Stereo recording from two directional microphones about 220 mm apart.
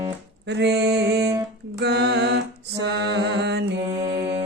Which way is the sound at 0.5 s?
50° right (ahead or behind).